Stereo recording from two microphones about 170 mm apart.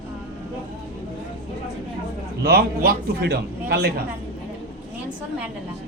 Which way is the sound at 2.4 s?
65° right (ahead or behind).